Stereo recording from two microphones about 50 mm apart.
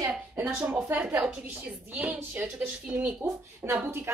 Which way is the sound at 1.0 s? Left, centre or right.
Centre.